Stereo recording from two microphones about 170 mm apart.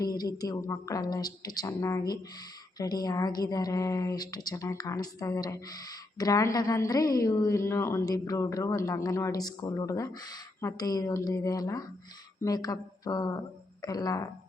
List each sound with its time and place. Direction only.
0.0 s a woman's voice: 20° left (ahead or behind)